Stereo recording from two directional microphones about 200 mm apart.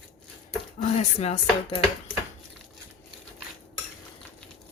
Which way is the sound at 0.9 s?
30° left (ahead or behind).